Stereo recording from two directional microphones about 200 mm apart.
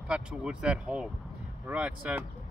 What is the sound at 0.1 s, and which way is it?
Speech, 5° right (ahead or behind).